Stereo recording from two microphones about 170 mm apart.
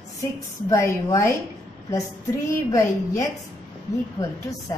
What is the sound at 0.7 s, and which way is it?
Speech, 20° left (ahead or behind).